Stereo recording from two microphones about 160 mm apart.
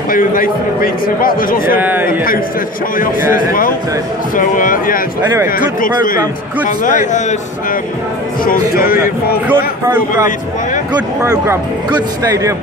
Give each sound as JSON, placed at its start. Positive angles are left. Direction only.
{"t": 0.1, "sound": "a man's voice", "side_deg": 60}
{"t": 1.8, "sound": "a man's voice", "side_deg": -10}
{"t": 2.0, "sound": "a man's voice", "side_deg": 65}
{"t": 4.4, "sound": "a man's voice", "side_deg": 60}
{"t": 5.2, "sound": "a man's voice", "side_deg": -20}
{"t": 5.6, "sound": "a man's voice", "side_deg": 60}
{"t": 8.5, "sound": "speech", "side_deg": 65}
{"t": 9.5, "sound": "a man's voice", "side_deg": -15}
{"t": 11.2, "sound": "a man's voice", "side_deg": -15}